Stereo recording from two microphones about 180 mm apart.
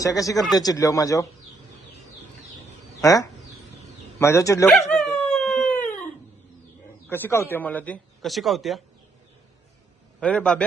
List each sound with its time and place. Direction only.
0.0 s speech: 20° left (ahead or behind)
3.0 s speech: 20° left (ahead or behind)
4.9 s dog: centre (ahead or behind)
7.1 s speech: 15° left (ahead or behind)
10.2 s speech: 5° left (ahead or behind)